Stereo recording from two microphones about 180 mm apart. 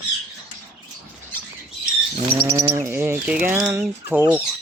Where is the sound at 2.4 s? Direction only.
20° right (ahead or behind).